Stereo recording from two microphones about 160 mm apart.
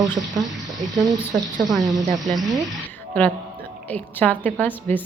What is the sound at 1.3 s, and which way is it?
A woman's voice, centre (ahead or behind).